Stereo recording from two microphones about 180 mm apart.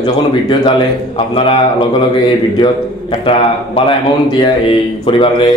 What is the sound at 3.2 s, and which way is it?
A man's voice, 30° left (ahead or behind).